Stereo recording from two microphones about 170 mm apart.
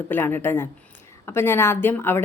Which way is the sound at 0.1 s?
10° left (ahead or behind).